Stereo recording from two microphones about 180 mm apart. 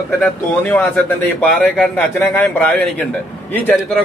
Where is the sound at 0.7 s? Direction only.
10° left (ahead or behind).